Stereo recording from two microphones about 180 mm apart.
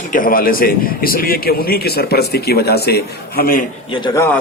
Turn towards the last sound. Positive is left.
turn(degrees=20)  # may be behind; listen again after turning